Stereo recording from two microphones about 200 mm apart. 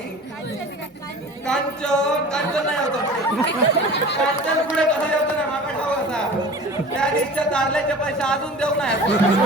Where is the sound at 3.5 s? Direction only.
60° left (ahead or behind).